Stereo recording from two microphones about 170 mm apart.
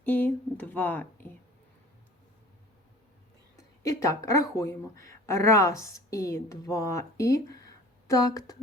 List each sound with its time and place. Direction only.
0.0 s speech: 10° left (ahead or behind)
3.8 s speech: 20° left (ahead or behind)